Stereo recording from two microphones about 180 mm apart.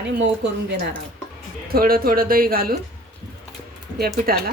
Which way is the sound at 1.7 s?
55° right (ahead or behind).